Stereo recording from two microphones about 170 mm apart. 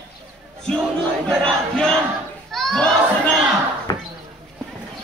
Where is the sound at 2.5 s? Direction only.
Centre (ahead or behind).